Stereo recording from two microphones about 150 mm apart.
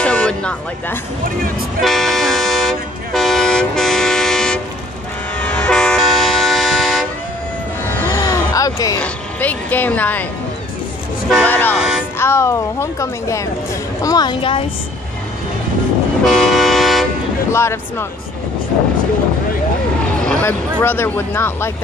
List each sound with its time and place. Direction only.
0.0 s vehicle: 5° left (ahead or behind)
8.0 s a sound: 20° left (ahead or behind)
9.0 s vehicle: 10° left (ahead or behind)
11.4 s vehicle: 10° left (ahead or behind)
11.7 s music: centre (ahead or behind)
12.2 s speech: 15° left (ahead or behind); by 14.6 s 35° left (ahead or behind)
16.3 s vehicle: centre (ahead or behind)
17.5 s speech: 15° left (ahead or behind)
20.2 s speech: 10° left (ahead or behind)